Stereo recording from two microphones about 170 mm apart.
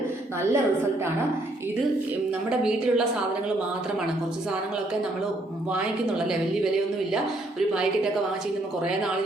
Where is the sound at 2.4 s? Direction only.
5° right (ahead or behind).